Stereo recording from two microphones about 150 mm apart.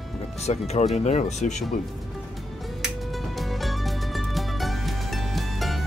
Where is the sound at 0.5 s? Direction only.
45° left (ahead or behind).